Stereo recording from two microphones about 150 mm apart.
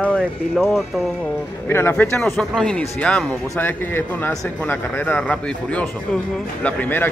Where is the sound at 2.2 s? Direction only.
Centre (ahead or behind).